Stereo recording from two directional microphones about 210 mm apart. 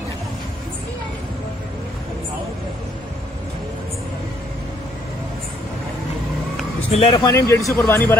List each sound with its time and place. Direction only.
6.9 s speech: 25° left (ahead or behind)
7.3 s speech: 15° left (ahead or behind)